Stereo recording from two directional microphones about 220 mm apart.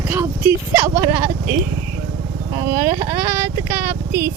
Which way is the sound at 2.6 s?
15° right (ahead or behind).